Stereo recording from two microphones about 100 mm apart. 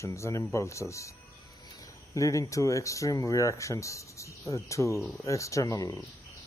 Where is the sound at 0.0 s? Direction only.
30° left (ahead or behind).